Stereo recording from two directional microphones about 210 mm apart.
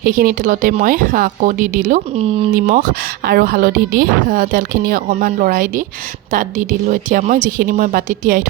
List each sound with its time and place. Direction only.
0.0 s a woman's voice: 40° right (ahead or behind)
2.6 s a woman's voice: 40° right (ahead or behind)